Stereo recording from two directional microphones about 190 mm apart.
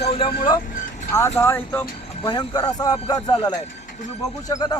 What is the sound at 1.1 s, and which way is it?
Speech, 15° left (ahead or behind).